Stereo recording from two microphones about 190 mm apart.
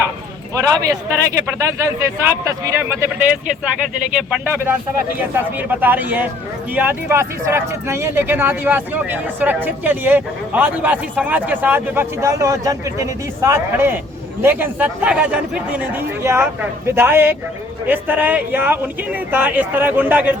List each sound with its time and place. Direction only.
0.5 s speech: 15° right (ahead or behind)